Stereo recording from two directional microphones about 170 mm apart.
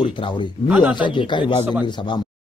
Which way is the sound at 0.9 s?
30° left (ahead or behind).